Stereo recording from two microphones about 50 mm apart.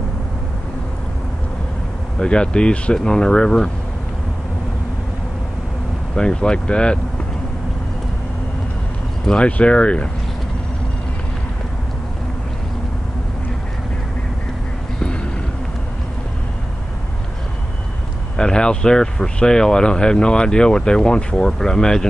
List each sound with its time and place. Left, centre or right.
2.1 s speech: centre
6.1 s speech: centre
9.2 s speech: centre
18.3 s speech: centre